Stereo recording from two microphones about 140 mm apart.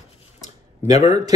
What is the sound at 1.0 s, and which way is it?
Speech, 25° right (ahead or behind).